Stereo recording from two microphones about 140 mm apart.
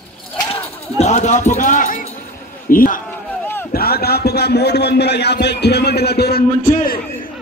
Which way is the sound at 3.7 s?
90° left.